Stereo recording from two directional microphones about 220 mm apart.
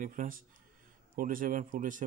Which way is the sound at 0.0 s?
35° right (ahead or behind).